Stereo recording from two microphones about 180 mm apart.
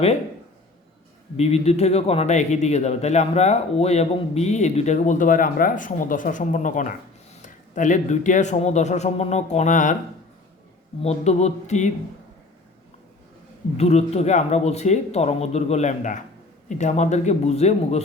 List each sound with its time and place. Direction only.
1.4 s a man's voice: 35° left (ahead or behind)
11.0 s a man's voice: 35° left (ahead or behind)
13.7 s a man's voice: 35° left (ahead or behind)